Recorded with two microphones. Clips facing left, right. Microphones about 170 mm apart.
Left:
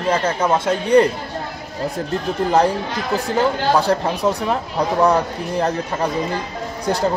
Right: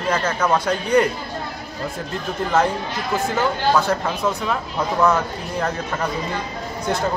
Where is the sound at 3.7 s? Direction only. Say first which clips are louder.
Left 3 dB; 35° left (ahead or behind).